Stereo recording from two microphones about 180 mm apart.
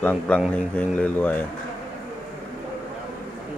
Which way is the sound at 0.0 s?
5° left (ahead or behind).